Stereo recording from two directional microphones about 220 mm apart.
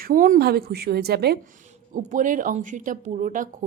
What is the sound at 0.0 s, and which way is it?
A woman's voice, 40° right (ahead or behind).